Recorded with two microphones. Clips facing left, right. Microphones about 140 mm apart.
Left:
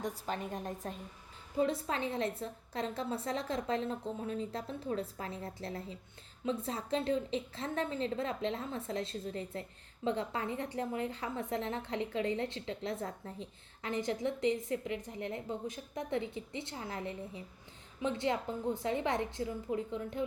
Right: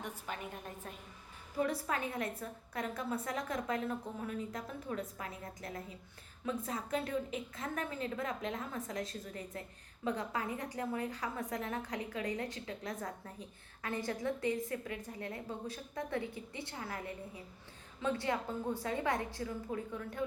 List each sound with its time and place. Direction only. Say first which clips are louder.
0.0 s a woman's voice: left 5 dB; 35° left (ahead or behind)
1.5 s a woman's voice: left 2 dB; 25° left (ahead or behind)